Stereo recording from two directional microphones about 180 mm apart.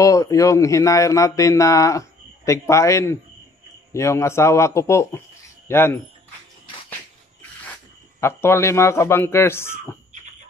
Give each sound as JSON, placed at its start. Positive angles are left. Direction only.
{"t": 0.0, "sound": "a man's voice", "side_deg": 20}
{"t": 8.2, "sound": "a man's voice", "side_deg": 15}